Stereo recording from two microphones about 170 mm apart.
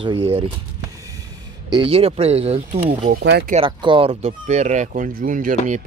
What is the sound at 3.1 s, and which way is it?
Speech, 65° right (ahead or behind).